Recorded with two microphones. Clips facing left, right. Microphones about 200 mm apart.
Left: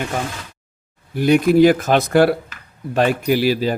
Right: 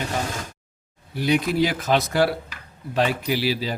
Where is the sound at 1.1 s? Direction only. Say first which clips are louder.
Left 8 dB; 50° left (ahead or behind).